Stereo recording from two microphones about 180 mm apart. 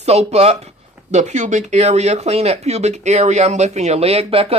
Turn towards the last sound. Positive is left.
turn(degrees=-30)  # may be behind; listen again after turning